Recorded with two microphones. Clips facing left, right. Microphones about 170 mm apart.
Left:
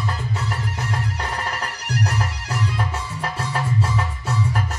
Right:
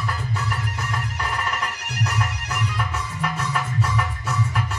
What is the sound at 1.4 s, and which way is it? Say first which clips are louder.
Music: even; 35° left (ahead or behind).